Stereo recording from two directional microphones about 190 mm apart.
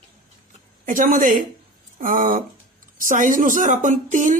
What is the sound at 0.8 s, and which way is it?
A woman's voice, 45° right (ahead or behind).